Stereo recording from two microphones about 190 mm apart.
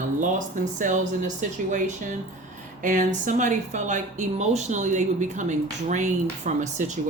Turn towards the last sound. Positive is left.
turn(degrees=-40)  # may be behind; listen again after turning